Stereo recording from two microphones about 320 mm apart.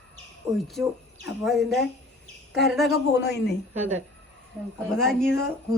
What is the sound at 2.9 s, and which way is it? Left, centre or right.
Speech, left.